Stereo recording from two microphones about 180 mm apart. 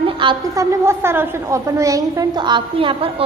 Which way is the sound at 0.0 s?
25° right (ahead or behind).